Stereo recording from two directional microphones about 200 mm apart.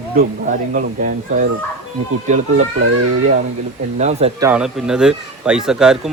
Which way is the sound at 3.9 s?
35° right (ahead or behind).